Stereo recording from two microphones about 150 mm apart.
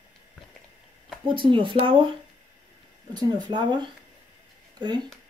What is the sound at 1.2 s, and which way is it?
Speech, 35° right (ahead or behind).